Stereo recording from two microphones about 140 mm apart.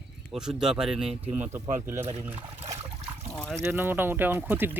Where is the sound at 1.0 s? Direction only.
45° right (ahead or behind).